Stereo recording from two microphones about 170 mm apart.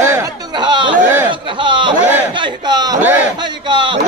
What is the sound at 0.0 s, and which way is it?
Chatter, 20° right (ahead or behind).